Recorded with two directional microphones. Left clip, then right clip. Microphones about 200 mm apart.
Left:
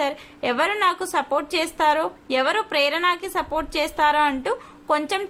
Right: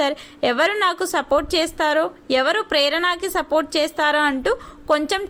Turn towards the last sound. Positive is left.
turn(degrees=-20)  # may be behind; listen again after turning